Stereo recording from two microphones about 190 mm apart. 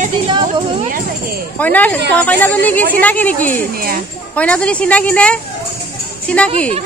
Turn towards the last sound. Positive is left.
turn(degrees=5)  # may be behind; listen again after turning